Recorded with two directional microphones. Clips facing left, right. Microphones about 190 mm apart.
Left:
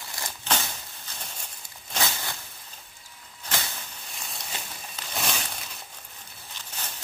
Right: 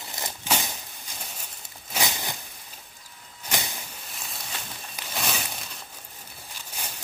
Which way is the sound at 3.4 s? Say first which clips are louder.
Right 1 dB; 15° right (ahead or behind).